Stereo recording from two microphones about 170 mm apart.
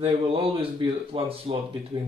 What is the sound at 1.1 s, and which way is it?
Speech, 30° right (ahead or behind).